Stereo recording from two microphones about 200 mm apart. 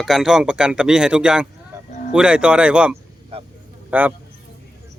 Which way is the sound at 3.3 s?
30° right (ahead or behind).